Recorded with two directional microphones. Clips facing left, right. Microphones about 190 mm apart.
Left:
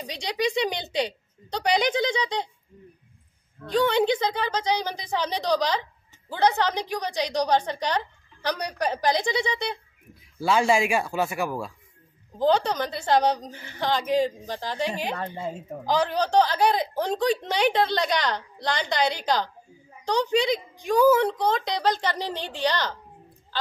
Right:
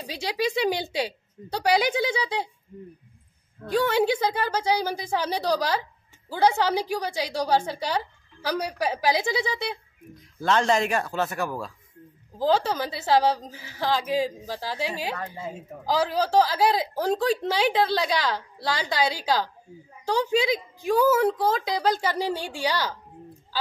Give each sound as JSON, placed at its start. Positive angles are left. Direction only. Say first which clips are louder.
{"t": 0.0, "sound": "a woman's voice", "louder": "even", "side_deg": -5}
{"t": 3.6, "sound": "a woman's voice", "louder": "left 1 dB", "side_deg": -10}
{"t": 10.4, "sound": "speech", "louder": "left 1 dB", "side_deg": 5}
{"t": 12.4, "sound": "speech", "louder": "left 1 dB", "side_deg": -5}
{"t": 15.1, "sound": "a woman's voice", "louder": "left 3 dB", "side_deg": 30}
{"t": 15.8, "sound": "speech", "louder": "even", "side_deg": -5}